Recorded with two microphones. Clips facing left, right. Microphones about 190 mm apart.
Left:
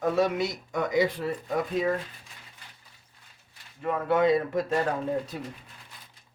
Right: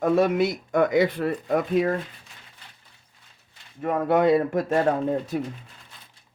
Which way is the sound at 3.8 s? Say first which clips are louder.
Right 3 dB; 55° right (ahead or behind).